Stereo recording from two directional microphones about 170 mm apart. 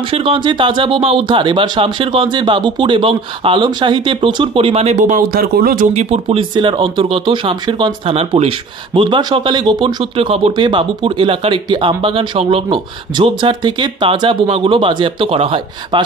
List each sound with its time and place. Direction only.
0.1 s speech: 30° right (ahead or behind); by 5.9 s 60° right (ahead or behind)
5.9 s speech: 40° right (ahead or behind)
6.2 s speech: 30° right (ahead or behind)